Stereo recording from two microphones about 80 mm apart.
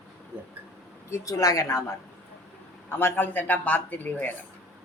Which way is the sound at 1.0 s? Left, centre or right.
Left.